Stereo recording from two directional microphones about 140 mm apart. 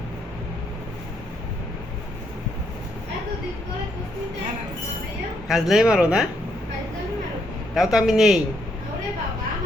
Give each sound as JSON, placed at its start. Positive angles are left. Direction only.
{"t": 5.5, "sound": "speech", "side_deg": -5}
{"t": 7.8, "sound": "speech", "side_deg": -5}